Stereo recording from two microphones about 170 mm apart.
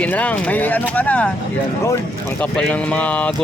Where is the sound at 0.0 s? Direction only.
10° left (ahead or behind).